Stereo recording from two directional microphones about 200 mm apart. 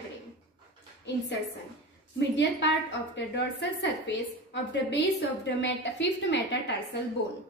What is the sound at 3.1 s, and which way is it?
A woman's voice, 60° left (ahead or behind).